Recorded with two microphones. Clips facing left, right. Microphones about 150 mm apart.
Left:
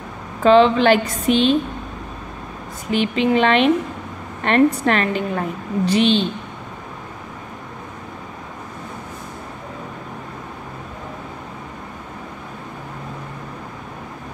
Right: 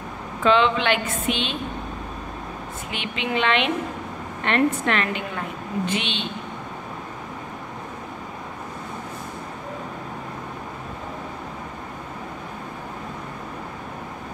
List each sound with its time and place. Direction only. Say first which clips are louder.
0.4 s a woman's voice: left 7 dB; 35° left (ahead or behind)
2.9 s a woman's voice: left 11 dB; 35° left (ahead or behind)